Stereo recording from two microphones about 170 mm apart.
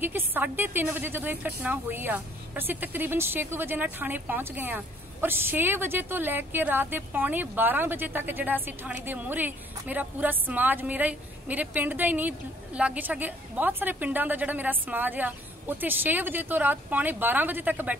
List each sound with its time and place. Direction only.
0.0 s speech: 10° right (ahead or behind)